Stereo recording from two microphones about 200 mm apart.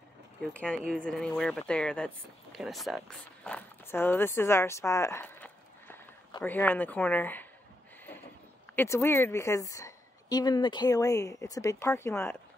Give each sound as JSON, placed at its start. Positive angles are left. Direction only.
{"t": 0.4, "sound": "a woman's voice", "side_deg": 5}
{"t": 8.7, "sound": "a woman's voice", "side_deg": 15}